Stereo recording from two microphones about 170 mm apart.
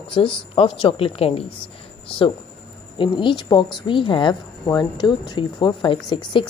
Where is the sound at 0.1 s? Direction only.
30° left (ahead or behind).